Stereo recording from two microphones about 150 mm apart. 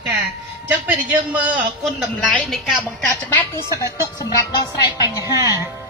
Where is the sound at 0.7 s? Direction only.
10° right (ahead or behind).